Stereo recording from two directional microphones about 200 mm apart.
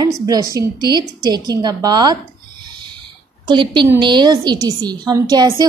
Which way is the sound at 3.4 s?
25° right (ahead or behind).